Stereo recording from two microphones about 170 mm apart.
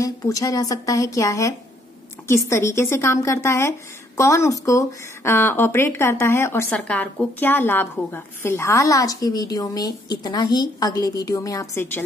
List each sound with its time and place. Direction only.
0.0 s speech: 20° left (ahead or behind)